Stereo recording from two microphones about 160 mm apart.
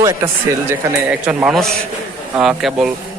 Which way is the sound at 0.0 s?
20° right (ahead or behind).